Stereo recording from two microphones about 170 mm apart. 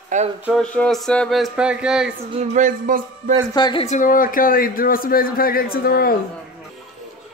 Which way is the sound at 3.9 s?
50° left (ahead or behind).